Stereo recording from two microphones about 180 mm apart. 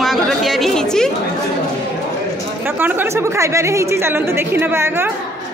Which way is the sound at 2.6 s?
10° right (ahead or behind).